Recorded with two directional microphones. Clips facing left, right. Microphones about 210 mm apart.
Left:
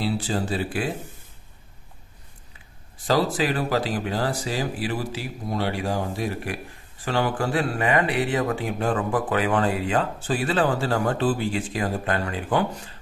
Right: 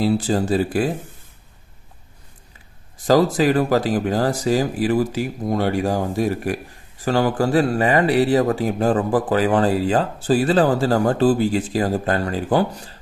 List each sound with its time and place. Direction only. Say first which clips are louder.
0.0 s speech: right 7 dB; 45° right (ahead or behind)
3.1 s speech: right 7 dB; 45° right (ahead or behind)